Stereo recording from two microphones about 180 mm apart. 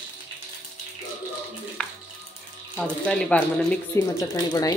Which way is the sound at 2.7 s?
5° left (ahead or behind).